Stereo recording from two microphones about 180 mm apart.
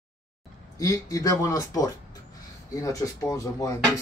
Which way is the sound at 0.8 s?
20° left (ahead or behind).